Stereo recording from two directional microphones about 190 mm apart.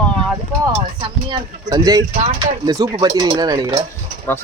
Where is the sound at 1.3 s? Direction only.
20° right (ahead or behind).